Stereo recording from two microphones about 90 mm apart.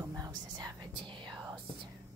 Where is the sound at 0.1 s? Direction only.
45° right (ahead or behind); by 1.3 s 60° right (ahead or behind).